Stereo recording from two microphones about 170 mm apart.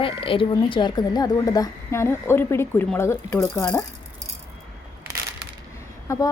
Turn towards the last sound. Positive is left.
turn(degrees=20)  # may be behind; listen again after turning